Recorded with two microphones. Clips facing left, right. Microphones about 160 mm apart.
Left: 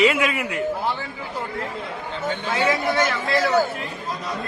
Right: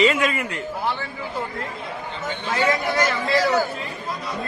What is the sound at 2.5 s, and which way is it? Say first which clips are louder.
A man's voice: even; centre (ahead or behind).